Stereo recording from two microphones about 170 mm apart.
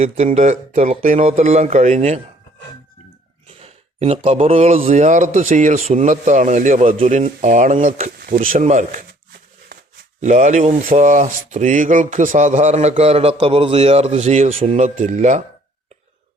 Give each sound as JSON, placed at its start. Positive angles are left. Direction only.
{"t": 0.0, "sound": "a man's voice", "side_deg": -40}
{"t": 3.6, "sound": "a man's voice", "side_deg": -35}
{"t": 10.2, "sound": "a man's voice", "side_deg": -45}